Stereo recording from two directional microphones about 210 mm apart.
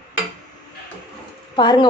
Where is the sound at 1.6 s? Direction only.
20° left (ahead or behind).